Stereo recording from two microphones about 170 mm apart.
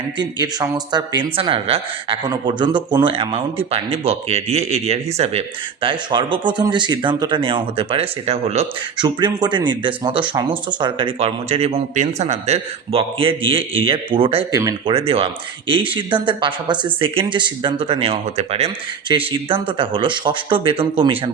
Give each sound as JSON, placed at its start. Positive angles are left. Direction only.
{"t": 0.2, "sound": "speech", "side_deg": -25}
{"t": 9.0, "sound": "speech", "side_deg": -25}
{"t": 14.5, "sound": "speech", "side_deg": -20}